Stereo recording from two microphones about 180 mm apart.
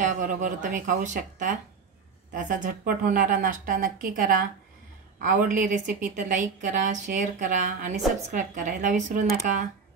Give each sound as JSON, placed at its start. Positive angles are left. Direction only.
{"t": 0.0, "sound": "a woman's voice", "side_deg": -45}